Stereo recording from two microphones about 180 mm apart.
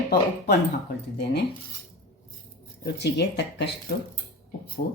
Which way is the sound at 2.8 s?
70° left (ahead or behind).